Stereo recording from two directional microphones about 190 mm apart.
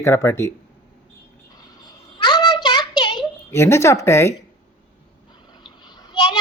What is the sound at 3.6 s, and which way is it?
Speech, 15° left (ahead or behind).